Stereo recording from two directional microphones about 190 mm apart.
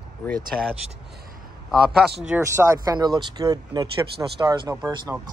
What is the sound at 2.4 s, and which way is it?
Speech, 15° right (ahead or behind).